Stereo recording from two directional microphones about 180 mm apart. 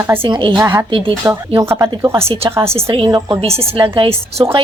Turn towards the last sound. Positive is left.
turn(degrees=-25)  # may be behind; listen again after turning